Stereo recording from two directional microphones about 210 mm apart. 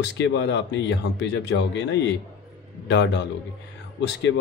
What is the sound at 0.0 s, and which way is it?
Speech, 55° left (ahead or behind).